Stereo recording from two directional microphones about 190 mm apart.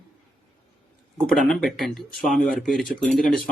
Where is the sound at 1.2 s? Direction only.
5° left (ahead or behind).